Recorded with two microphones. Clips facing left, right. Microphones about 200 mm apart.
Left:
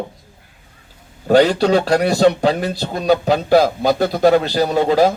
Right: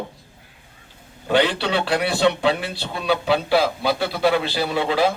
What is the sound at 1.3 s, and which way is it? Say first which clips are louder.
Speech: left 7 dB; 40° left (ahead or behind).